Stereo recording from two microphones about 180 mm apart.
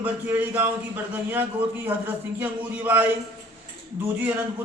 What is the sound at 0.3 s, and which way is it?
A man's voice, 10° right (ahead or behind).